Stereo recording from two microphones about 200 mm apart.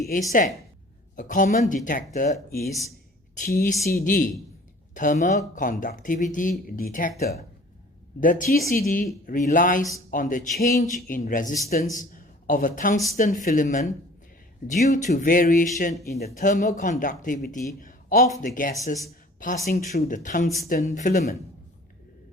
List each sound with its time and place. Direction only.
0.0 s speech: 40° left (ahead or behind)
8.2 s a man's voice: 40° left (ahead or behind)
17.7 s a sound: 45° left (ahead or behind)
18.4 s speech: 40° left (ahead or behind)